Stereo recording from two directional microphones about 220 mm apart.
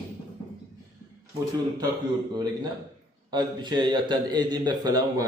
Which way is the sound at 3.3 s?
20° right (ahead or behind).